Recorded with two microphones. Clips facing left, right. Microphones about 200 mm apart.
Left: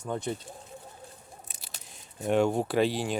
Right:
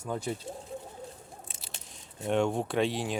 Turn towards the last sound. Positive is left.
turn(degrees=0)  # may be behind; listen again after turning